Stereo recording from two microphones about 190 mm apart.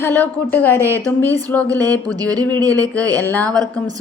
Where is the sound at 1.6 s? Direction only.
20° right (ahead or behind).